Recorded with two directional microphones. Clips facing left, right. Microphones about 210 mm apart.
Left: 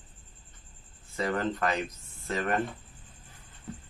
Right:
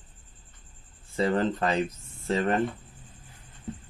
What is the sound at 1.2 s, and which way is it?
Speech, 30° right (ahead or behind).